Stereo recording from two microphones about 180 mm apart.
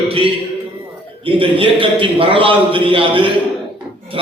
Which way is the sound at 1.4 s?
30° right (ahead or behind).